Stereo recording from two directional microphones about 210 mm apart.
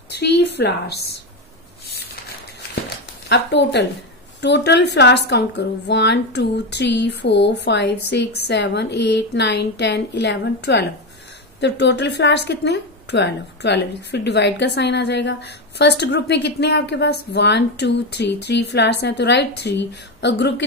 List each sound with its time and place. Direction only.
0.1 s speech: 50° left (ahead or behind)
3.3 s a woman's voice: 55° left (ahead or behind)